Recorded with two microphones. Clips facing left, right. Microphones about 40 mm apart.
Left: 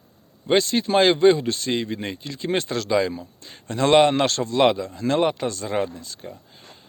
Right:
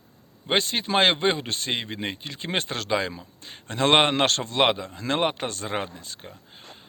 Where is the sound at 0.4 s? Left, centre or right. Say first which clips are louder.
Left 5 dB; right.